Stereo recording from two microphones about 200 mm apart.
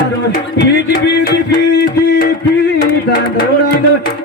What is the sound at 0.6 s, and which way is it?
Music, 55° left (ahead or behind).